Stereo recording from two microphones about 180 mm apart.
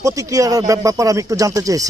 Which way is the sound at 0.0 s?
20° right (ahead or behind).